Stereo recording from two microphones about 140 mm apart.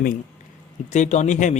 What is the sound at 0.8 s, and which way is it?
Speech, 60° left (ahead or behind).